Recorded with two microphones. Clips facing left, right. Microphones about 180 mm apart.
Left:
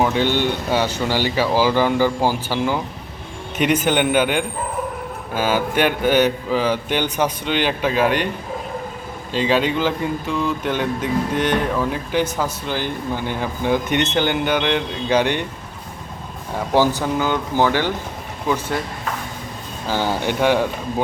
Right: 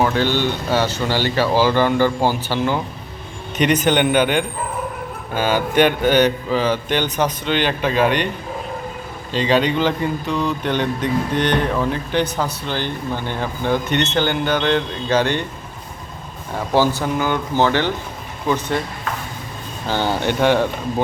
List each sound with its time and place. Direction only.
0.0 s a man's voice: 15° left (ahead or behind)
9.3 s speech: 5° left (ahead or behind)
16.7 s speech: 15° left (ahead or behind)
19.9 s speech: 5° left (ahead or behind)